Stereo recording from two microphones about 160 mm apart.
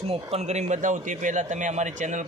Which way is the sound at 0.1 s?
40° right (ahead or behind).